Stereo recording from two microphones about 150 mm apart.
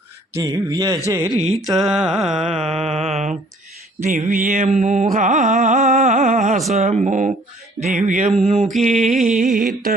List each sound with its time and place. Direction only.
0.3 s speech: 25° right (ahead or behind)
1.5 s mantra: centre (ahead or behind)
2.6 s speech: 45° right (ahead or behind)
4.0 s music: 60° right (ahead or behind)
6.7 s speech: 50° right (ahead or behind)
7.9 s music: 60° right (ahead or behind)
8.4 s speech: 45° right (ahead or behind)
8.8 s music: 55° right (ahead or behind)